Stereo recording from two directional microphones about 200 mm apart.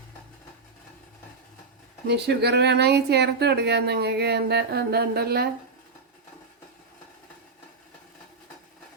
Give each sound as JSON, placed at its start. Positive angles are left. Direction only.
{"t": 2.0, "sound": "speech", "side_deg": -55}